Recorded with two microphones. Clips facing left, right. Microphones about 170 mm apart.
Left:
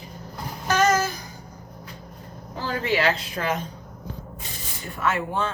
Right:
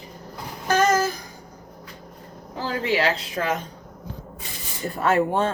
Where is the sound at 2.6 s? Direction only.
30° right (ahead or behind).